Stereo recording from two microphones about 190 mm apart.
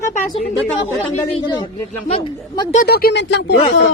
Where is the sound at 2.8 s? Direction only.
55° left (ahead or behind).